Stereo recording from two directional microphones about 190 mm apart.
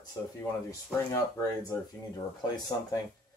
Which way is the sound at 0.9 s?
5° right (ahead or behind).